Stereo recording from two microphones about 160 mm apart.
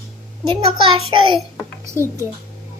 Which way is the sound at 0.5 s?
35° right (ahead or behind).